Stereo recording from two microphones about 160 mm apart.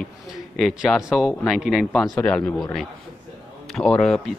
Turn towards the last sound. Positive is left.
turn(degrees=0)  # may be behind; listen again after turning